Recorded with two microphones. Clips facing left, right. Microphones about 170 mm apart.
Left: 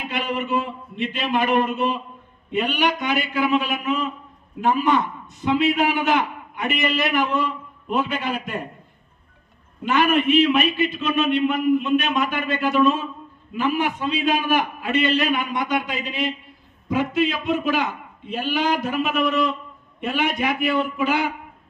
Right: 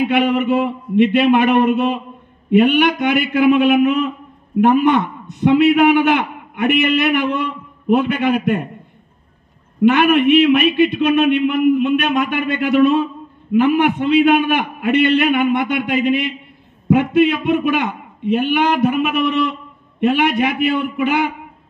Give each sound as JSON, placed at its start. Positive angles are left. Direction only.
{"t": 0.1, "sound": "a man's voice", "side_deg": -65}
{"t": 9.8, "sound": "a man's voice", "side_deg": -65}